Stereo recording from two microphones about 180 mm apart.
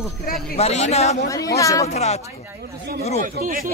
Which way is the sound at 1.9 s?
40° left (ahead or behind).